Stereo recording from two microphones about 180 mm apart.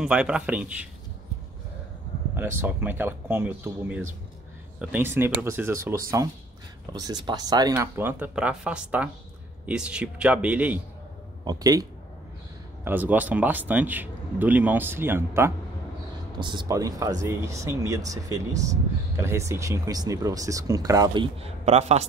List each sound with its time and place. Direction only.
0.0 s speech: 5° right (ahead or behind)
2.3 s speech: 10° right (ahead or behind)
7.7 s speech: 10° right (ahead or behind)
11.4 s speech: 20° right (ahead or behind)
16.3 s speech: 25° right (ahead or behind)